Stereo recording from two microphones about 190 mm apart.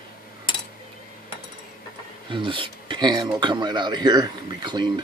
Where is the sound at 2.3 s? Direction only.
25° right (ahead or behind).